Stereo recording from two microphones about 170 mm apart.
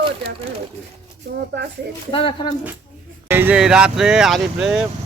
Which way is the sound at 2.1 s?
30° left (ahead or behind).